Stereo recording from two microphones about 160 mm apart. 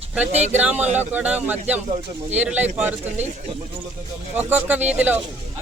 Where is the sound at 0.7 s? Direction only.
45° right (ahead or behind).